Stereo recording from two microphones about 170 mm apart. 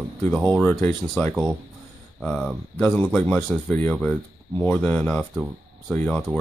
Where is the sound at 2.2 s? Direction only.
5° left (ahead or behind).